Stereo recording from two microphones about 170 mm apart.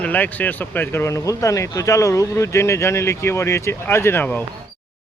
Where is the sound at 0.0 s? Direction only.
10° left (ahead or behind).